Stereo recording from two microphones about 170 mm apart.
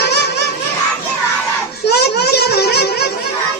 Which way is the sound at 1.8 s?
75° left (ahead or behind).